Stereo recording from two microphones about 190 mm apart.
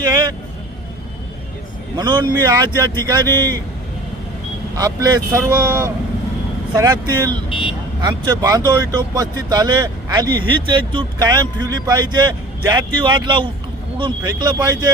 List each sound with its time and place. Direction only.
2.0 s speech: 20° right (ahead or behind)
4.8 s speech: 15° right (ahead or behind)